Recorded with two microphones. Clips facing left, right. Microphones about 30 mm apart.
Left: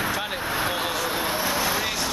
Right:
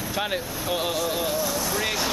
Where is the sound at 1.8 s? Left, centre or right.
Centre.